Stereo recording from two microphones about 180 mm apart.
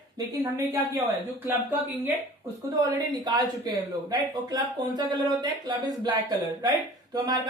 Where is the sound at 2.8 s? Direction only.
20° right (ahead or behind).